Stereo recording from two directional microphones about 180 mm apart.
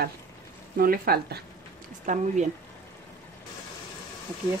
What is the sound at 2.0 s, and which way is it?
Speech, 45° right (ahead or behind).